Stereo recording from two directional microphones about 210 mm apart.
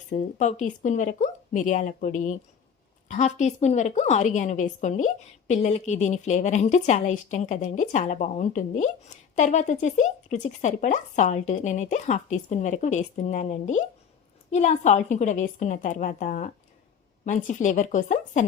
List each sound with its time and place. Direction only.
0.1 s a woman's voice: 35° left (ahead or behind)